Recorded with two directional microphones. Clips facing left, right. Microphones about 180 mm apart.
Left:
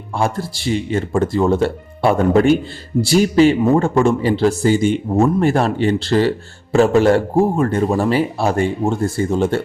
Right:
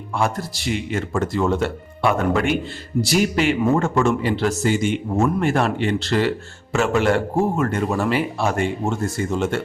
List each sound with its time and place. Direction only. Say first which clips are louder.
0.2 s a man's voice: left 3 dB; 30° left (ahead or behind)